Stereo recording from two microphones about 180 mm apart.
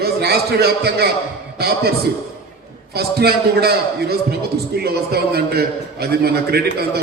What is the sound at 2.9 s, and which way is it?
Speech, 60° right (ahead or behind).